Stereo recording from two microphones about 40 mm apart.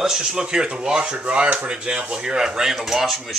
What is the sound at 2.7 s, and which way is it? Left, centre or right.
Speech, centre.